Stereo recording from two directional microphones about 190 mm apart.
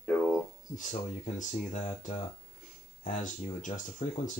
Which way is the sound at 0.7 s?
40° left (ahead or behind).